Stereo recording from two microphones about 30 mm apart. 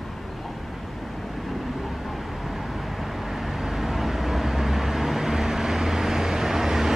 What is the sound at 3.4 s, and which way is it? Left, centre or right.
Vehicle, centre.